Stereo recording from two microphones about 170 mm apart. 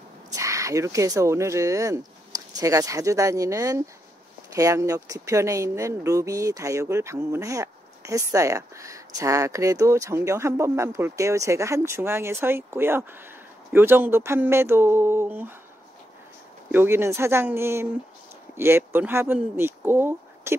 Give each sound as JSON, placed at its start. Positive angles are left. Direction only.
{"t": 0.3, "sound": "speech", "side_deg": -20}
{"t": 16.7, "sound": "speech", "side_deg": -15}